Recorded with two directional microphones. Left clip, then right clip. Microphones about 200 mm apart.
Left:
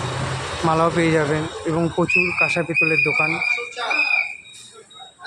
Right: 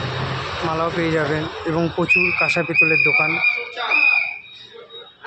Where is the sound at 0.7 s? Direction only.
25° left (ahead or behind).